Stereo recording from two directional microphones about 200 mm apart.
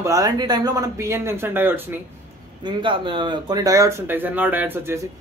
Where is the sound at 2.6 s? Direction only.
25° right (ahead or behind).